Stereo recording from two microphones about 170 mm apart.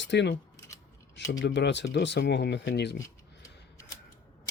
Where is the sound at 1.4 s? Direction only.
90° left.